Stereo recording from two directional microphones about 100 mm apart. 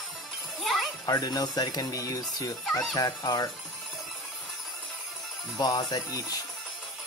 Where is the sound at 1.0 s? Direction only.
40° left (ahead or behind).